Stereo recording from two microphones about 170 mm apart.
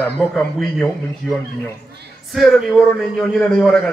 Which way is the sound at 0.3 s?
Centre (ahead or behind).